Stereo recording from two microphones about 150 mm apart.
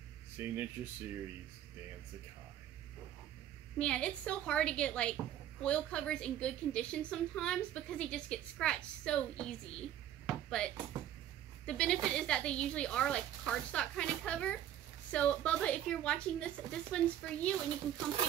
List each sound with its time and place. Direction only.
0.4 s speech: 15° right (ahead or behind)
3.7 s speech: 5° left (ahead or behind)
10.9 s dishes: 25° right (ahead or behind)
11.6 s speech: 5° left (ahead or behind)